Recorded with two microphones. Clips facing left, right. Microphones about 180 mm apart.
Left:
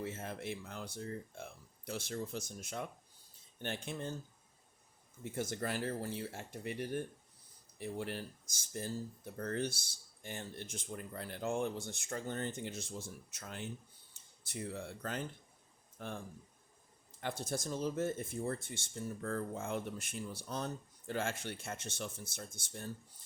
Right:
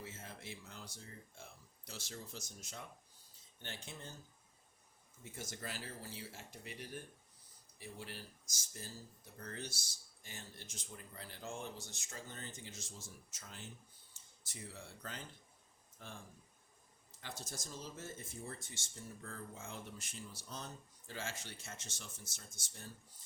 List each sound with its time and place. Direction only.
0.0 s speech: 60° left (ahead or behind)
5.2 s speech: 55° left (ahead or behind)